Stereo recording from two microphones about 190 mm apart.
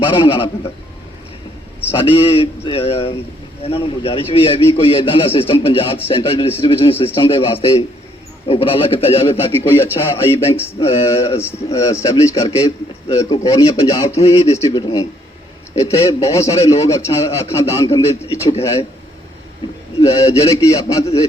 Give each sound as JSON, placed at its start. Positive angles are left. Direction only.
{"t": 0.0, "sound": "a man's voice", "side_deg": 25}
{"t": 2.0, "sound": "a man's voice", "side_deg": 30}
{"t": 9.6, "sound": "a man's voice", "side_deg": 15}
{"t": 10.8, "sound": "a man's voice", "side_deg": 30}
{"t": 11.7, "sound": "a man's voice", "side_deg": 15}
{"t": 20.0, "sound": "a man's voice", "side_deg": 15}